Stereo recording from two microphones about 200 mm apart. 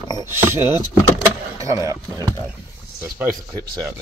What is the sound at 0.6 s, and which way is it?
Speech, 20° left (ahead or behind).